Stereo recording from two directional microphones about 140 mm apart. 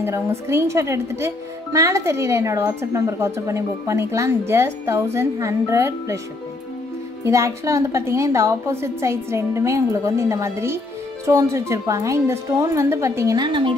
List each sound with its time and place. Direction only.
0.0 s speech: 20° right (ahead or behind)
7.2 s speech: 20° right (ahead or behind)